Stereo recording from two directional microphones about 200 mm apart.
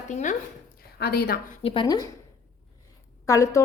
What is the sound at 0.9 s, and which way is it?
Speech, 55° left (ahead or behind).